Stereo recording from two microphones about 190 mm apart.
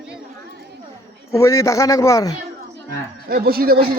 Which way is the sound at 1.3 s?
15° left (ahead or behind).